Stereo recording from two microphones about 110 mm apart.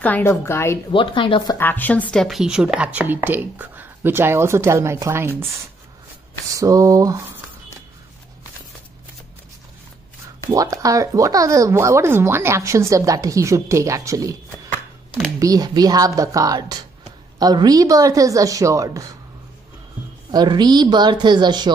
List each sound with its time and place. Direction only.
0.0 s a woman's voice: 15° left (ahead or behind)
0.9 s a woman's voice: 50° left (ahead or behind)
1.6 s a woman's voice: 15° left (ahead or behind)
2.2 s speech: 5° right (ahead or behind); by 5.3 s 25° right (ahead or behind)
6.5 s a woman's voice: 30° right (ahead or behind)
10.5 s speech: 30° right (ahead or behind)
15.3 s a woman's voice: 35° right (ahead or behind)
20.2 s a woman's voice: 40° right (ahead or behind)